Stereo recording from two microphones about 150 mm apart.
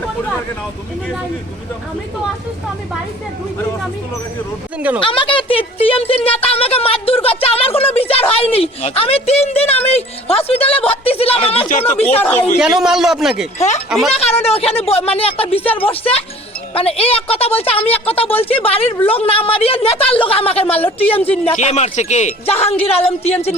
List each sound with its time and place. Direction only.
4.9 s a woman's voice: 35° left (ahead or behind)
12.5 s a man's voice: centre (ahead or behind)
13.6 s a woman's voice: 50° left (ahead or behind)
21.1 s speech: 10° left (ahead or behind)
21.3 s a woman's voice: 50° left (ahead or behind)